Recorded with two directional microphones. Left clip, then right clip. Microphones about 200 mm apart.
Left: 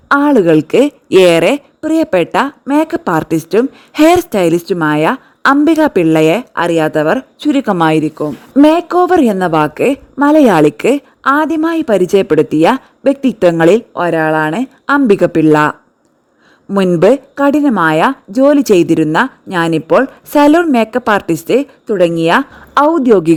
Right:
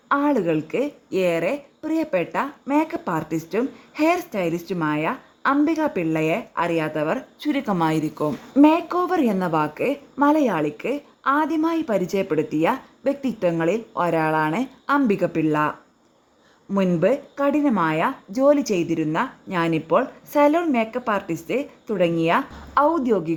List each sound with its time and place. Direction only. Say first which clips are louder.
0.1 s a woman's voice: left 12 dB; 45° left (ahead or behind)